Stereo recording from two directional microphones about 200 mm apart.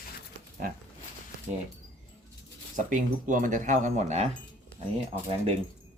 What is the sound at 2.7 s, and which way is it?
Speech, 40° right (ahead or behind).